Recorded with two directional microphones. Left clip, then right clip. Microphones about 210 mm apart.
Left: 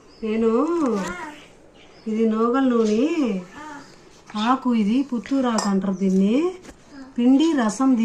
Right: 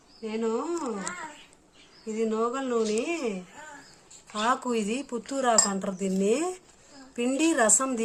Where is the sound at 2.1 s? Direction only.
45° right (ahead or behind).